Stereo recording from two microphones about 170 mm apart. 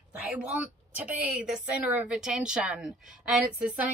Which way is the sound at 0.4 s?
10° right (ahead or behind).